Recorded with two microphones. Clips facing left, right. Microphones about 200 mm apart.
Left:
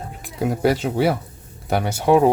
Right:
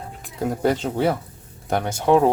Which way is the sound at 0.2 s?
10° left (ahead or behind).